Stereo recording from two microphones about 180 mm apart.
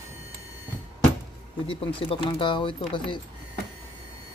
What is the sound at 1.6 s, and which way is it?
Speech, 30° left (ahead or behind).